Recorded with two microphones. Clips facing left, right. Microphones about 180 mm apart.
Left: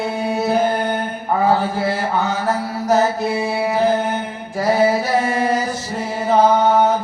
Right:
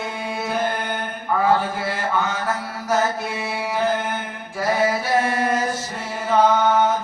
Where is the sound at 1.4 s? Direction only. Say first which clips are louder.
Left 3 dB; 40° left (ahead or behind).